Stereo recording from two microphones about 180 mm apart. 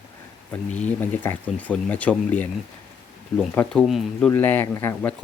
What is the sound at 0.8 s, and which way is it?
Speech, 10° left (ahead or behind).